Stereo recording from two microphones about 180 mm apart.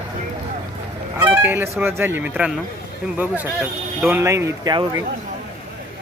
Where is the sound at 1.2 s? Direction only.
10° right (ahead or behind).